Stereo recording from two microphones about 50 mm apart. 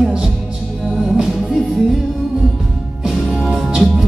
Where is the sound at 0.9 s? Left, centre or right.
Centre.